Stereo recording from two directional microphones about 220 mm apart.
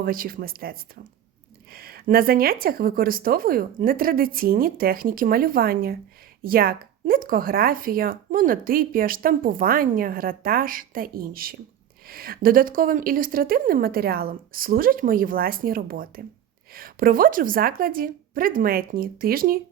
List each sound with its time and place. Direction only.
0.0 s speech: 40° right (ahead or behind)